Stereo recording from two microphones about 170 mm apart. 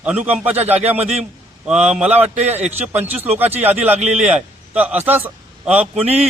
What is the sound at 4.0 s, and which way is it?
Speech, 40° right (ahead or behind).